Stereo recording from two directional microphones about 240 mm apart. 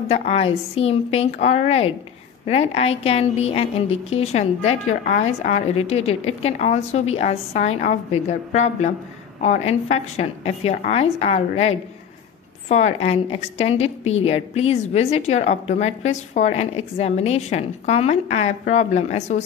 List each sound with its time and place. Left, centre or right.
0.1 s a woman's voice: left